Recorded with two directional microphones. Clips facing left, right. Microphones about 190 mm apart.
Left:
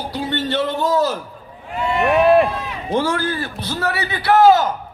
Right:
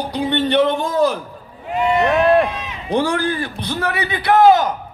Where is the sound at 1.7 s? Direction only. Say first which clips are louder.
Right 4 dB; 20° right (ahead or behind).